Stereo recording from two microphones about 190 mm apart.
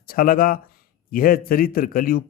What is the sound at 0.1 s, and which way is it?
Speech, 50° left (ahead or behind).